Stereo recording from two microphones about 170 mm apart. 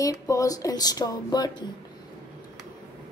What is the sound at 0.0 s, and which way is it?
A woman's voice, 20° left (ahead or behind).